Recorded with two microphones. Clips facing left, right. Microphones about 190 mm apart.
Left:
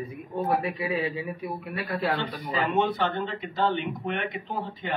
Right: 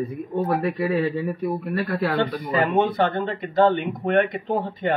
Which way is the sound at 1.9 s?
50° right (ahead or behind).